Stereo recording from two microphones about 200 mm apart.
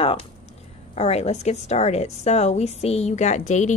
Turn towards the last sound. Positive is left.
turn(degrees=35)  # may be behind; listen again after turning